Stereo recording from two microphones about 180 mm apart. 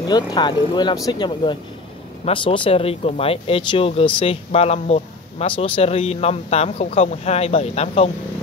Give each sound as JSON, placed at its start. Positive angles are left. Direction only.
{"t": 0.0, "sound": "speech", "side_deg": 25}